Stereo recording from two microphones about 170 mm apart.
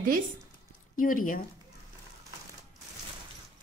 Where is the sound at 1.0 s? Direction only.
55° left (ahead or behind).